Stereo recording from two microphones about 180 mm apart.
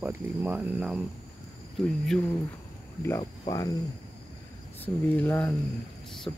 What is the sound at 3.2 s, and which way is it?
Speech, 20° left (ahead or behind).